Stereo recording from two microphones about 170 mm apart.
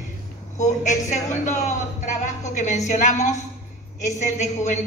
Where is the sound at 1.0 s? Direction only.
45° left (ahead or behind).